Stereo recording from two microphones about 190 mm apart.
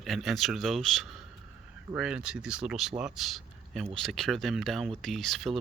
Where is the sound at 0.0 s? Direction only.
Centre (ahead or behind).